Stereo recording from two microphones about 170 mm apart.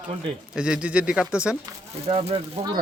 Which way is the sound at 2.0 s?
35° right (ahead or behind).